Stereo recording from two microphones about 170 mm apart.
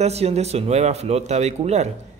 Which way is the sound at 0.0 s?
40° right (ahead or behind).